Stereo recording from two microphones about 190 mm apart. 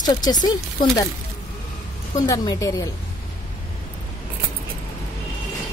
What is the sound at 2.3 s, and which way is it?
Speech, 20° left (ahead or behind).